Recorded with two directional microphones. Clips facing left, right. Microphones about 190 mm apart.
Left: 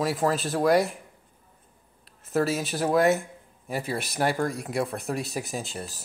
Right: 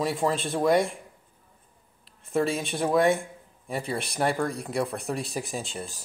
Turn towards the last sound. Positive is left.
turn(degrees=0)  # may be behind; listen again after turning